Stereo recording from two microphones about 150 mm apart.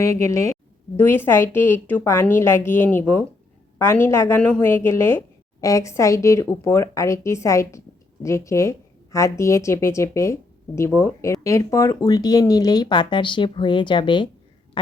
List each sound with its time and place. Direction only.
0.0 s a woman's voice: 20° left (ahead or behind)